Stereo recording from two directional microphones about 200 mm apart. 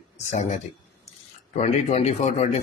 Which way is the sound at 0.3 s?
35° left (ahead or behind).